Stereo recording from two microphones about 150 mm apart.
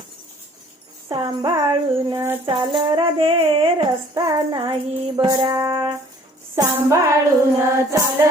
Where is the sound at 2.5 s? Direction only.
35° right (ahead or behind).